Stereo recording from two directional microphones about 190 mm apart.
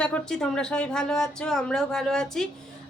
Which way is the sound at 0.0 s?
5° left (ahead or behind).